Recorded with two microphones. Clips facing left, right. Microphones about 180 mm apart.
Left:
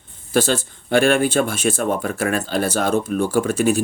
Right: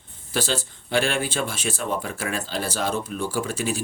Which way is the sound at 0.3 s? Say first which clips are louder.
Left 7 dB; 50° left (ahead or behind).